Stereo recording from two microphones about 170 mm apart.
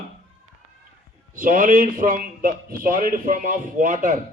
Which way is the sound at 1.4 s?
55° right (ahead or behind).